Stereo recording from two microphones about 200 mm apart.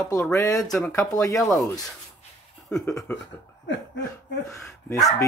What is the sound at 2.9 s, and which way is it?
Speech, 15° left (ahead or behind).